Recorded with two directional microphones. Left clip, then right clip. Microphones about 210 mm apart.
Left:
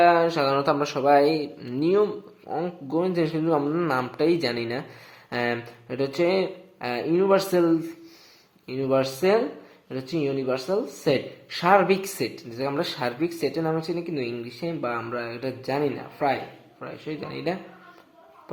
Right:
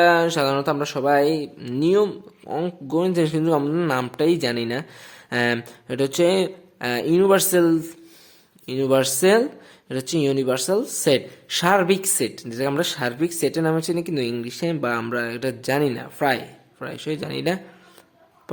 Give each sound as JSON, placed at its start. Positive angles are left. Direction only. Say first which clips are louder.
{"t": 0.0, "sound": "speech", "louder": "right 2 dB", "side_deg": -35}
{"t": 4.1, "sound": "speech", "louder": "right 3 dB", "side_deg": -30}